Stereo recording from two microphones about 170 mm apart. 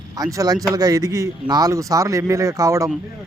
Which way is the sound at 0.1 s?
20° right (ahead or behind).